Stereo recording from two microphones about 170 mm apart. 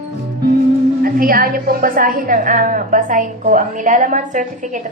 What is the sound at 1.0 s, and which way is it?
A woman's voice, 60° right (ahead or behind).